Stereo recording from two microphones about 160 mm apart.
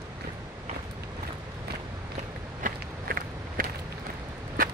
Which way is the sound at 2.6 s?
65° right (ahead or behind).